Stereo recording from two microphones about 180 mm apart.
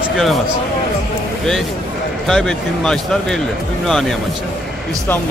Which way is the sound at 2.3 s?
5° left (ahead or behind).